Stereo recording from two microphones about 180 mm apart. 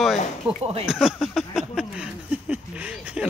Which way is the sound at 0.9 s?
5° right (ahead or behind).